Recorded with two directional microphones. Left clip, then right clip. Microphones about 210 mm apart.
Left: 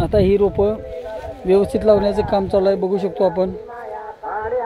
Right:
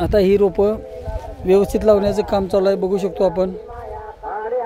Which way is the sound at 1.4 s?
10° right (ahead or behind).